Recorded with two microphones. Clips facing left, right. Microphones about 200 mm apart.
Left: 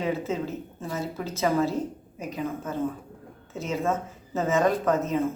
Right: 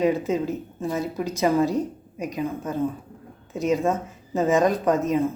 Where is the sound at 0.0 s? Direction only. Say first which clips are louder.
Right 6 dB; 15° right (ahead or behind).